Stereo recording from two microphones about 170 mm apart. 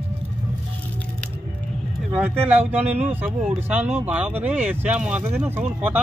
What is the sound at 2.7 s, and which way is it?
Speech, 10° right (ahead or behind).